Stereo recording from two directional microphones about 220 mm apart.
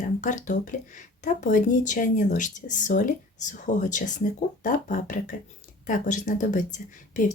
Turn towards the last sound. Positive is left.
turn(degrees=35)  # may be behind; listen again after turning